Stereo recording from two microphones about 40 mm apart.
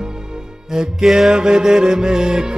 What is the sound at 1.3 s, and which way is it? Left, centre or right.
Music, centre.